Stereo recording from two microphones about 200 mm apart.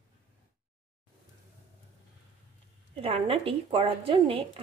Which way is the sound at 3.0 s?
30° right (ahead or behind).